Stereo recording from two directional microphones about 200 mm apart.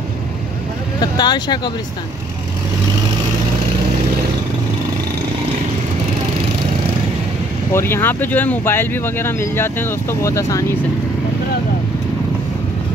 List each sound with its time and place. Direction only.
1.1 s speech: 20° left (ahead or behind)
7.7 s speech: 10° left (ahead or behind)